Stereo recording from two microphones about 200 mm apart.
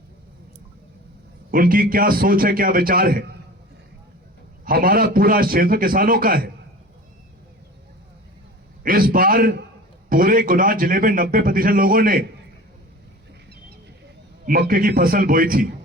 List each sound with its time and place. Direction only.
1.5 s a man's voice: 45° right (ahead or behind)
4.6 s a man's voice: 45° right (ahead or behind)
8.8 s a man's voice: 45° right (ahead or behind)
14.4 s a man's voice: 45° right (ahead or behind)